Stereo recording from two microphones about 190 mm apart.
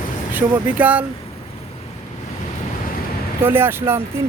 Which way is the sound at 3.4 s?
10° right (ahead or behind).